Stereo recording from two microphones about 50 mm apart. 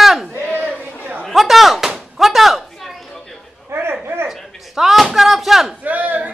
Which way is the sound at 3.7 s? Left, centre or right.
Right.